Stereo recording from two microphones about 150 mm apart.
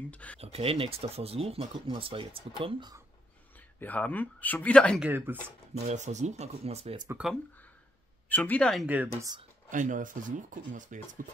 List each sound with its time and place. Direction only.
0.1 s speech: 10° left (ahead or behind)
0.4 s speech: 40° right (ahead or behind)
3.8 s speech: 10° left (ahead or behind)
5.0 s speech: 15° right (ahead or behind)
5.8 s speech: 50° right (ahead or behind)
8.3 s speech: 10° left (ahead or behind)
8.8 s speech: 10° right (ahead or behind)
9.7 s speech: 60° right (ahead or behind)